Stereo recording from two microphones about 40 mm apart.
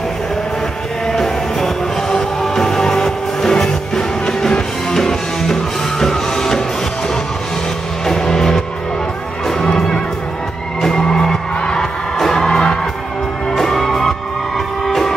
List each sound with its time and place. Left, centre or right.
1.1 s music: centre
8.1 s music: centre
9.6 s music: centre